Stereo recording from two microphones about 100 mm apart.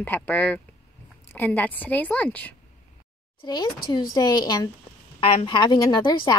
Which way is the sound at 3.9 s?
45° left (ahead or behind).